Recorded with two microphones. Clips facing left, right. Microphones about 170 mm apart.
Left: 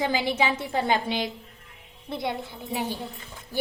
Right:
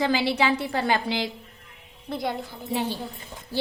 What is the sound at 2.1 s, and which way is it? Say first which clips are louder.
Speech: right 1 dB; 20° left (ahead or behind).